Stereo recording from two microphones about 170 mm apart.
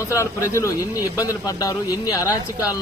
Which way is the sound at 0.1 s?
20° left (ahead or behind).